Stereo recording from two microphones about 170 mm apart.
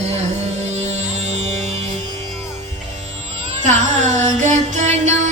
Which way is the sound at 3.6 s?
45° right (ahead or behind).